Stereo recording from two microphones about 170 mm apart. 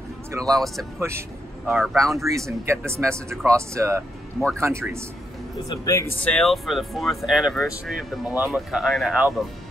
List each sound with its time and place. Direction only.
0.3 s speech: 20° right (ahead or behind)
1.7 s speech: 5° right (ahead or behind)
2.1 s speech: 20° right (ahead or behind)
5.7 s speech: 20° left (ahead or behind)
6.2 s speech: 5° left (ahead or behind)